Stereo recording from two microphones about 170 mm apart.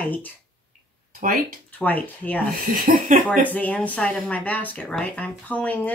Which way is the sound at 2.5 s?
55° right (ahead or behind).